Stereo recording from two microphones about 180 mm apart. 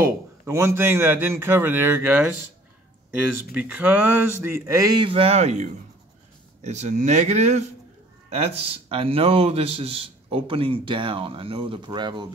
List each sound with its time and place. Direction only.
0.5 s speech: 15° right (ahead or behind)
3.5 s a man's voice: 10° right (ahead or behind); by 12.3 s 25° right (ahead or behind)